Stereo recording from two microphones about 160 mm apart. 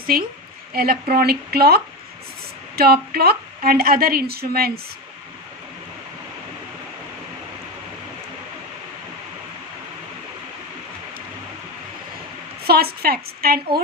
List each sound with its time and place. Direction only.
0.1 s a woman's voice: 65° right (ahead or behind)
12.6 s a woman's voice: 75° right (ahead or behind)